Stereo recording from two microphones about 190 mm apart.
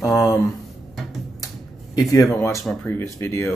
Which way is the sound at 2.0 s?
15° left (ahead or behind).